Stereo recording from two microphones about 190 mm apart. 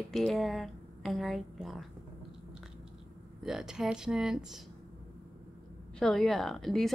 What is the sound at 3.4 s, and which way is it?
A woman's voice, centre (ahead or behind).